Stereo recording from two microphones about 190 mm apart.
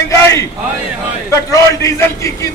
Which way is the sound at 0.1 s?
15° left (ahead or behind).